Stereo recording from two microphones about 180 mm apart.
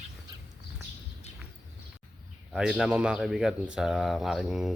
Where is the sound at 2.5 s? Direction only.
Centre (ahead or behind).